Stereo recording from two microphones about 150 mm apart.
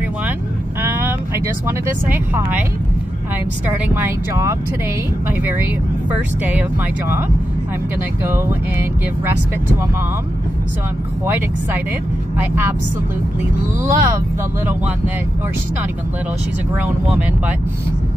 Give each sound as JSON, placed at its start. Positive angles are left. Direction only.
{"t": 0.8, "sound": "speech", "side_deg": -15}
{"t": 3.9, "sound": "speech", "side_deg": -15}
{"t": 8.2, "sound": "speech", "side_deg": -15}
{"t": 11.2, "sound": "speech", "side_deg": -15}
{"t": 13.8, "sound": "speech", "side_deg": -20}
{"t": 16.7, "sound": "speech", "side_deg": -10}